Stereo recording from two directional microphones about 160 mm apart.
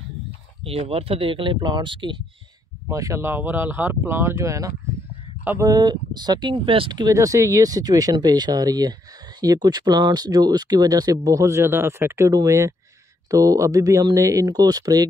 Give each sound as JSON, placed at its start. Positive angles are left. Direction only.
{"t": 0.7, "sound": "speech", "side_deg": -35}
{"t": 2.9, "sound": "speech", "side_deg": -20}
{"t": 5.7, "sound": "speech", "side_deg": -25}